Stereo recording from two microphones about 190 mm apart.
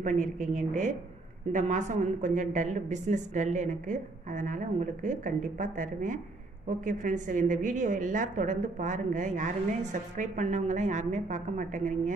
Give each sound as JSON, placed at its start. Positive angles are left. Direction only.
{"t": 0.0, "sound": "a woman's voice", "side_deg": -40}